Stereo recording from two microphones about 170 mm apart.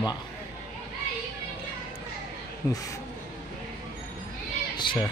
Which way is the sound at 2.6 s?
15° left (ahead or behind).